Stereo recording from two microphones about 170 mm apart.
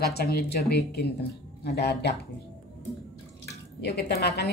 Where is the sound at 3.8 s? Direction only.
75° left (ahead or behind).